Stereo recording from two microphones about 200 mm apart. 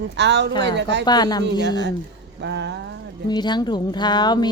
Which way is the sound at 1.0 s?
20° left (ahead or behind).